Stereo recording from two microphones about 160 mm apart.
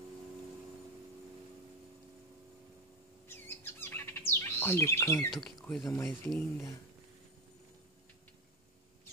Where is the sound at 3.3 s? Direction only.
15° left (ahead or behind).